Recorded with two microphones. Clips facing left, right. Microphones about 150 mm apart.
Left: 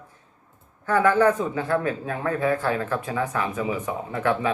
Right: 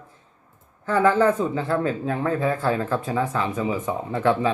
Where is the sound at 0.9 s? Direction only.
25° right (ahead or behind).